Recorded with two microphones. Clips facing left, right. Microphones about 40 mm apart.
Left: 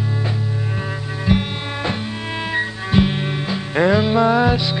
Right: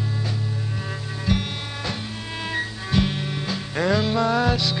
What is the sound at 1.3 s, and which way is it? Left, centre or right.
Music, left.